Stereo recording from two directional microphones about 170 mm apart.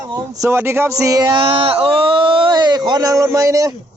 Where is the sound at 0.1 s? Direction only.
20° right (ahead or behind).